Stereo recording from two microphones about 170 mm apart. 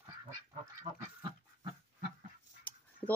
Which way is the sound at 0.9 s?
40° right (ahead or behind).